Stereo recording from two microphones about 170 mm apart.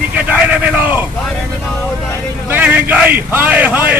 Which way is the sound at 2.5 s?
10° right (ahead or behind).